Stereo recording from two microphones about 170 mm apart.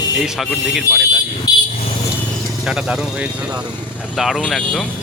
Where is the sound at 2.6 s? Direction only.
5° right (ahead or behind).